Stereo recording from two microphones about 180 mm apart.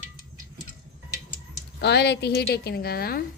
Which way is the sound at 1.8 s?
65° left (ahead or behind).